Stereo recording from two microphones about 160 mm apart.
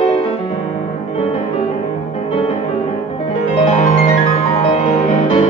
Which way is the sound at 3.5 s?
45° left (ahead or behind).